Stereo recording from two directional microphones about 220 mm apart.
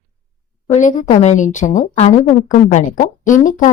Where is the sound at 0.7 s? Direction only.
35° left (ahead or behind).